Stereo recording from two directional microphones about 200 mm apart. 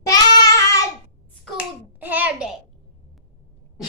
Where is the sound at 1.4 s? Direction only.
10° right (ahead or behind).